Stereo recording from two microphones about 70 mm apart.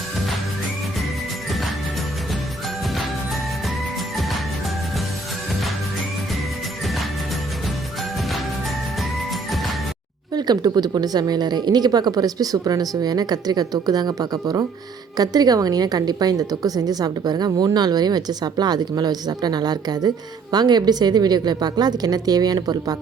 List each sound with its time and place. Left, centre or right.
10.3 s a woman's voice: right